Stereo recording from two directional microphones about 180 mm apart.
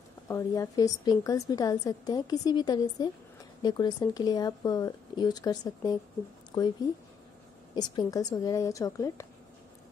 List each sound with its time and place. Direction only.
0.3 s a woman's voice: 20° left (ahead or behind)
7.7 s a woman's voice: 25° left (ahead or behind)